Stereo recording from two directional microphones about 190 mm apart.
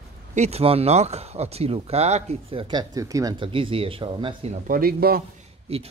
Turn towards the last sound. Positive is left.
turn(degrees=-30)  # may be behind; listen again after turning